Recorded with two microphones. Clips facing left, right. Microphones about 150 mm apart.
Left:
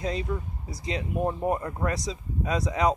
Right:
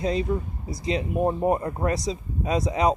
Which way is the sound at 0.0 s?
30° right (ahead or behind).